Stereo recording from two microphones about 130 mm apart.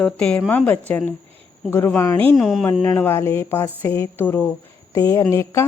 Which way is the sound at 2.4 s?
Centre (ahead or behind).